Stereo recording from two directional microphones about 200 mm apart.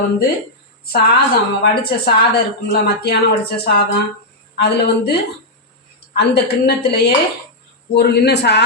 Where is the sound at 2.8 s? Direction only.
55° left (ahead or behind).